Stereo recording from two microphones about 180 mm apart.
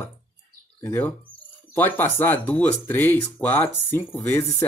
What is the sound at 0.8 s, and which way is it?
Speech, 10° left (ahead or behind).